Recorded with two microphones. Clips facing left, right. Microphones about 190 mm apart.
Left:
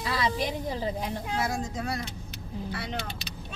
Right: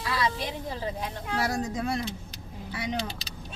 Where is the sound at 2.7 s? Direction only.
15° right (ahead or behind).